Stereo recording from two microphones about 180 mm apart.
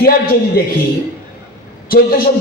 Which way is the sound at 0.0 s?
55° left (ahead or behind).